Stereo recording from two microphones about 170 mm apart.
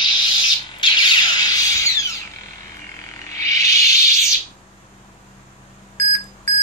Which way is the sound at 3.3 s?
20° left (ahead or behind).